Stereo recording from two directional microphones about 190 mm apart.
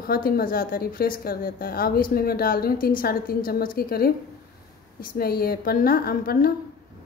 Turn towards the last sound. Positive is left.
turn(degrees=50)  # may be behind; listen again after turning